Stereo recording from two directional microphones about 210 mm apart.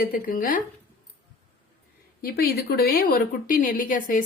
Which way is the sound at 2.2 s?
45° left (ahead or behind).